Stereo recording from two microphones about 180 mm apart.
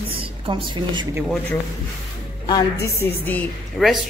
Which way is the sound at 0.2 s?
25° right (ahead or behind).